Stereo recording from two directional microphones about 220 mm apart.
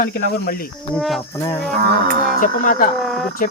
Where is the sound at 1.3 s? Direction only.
15° left (ahead or behind).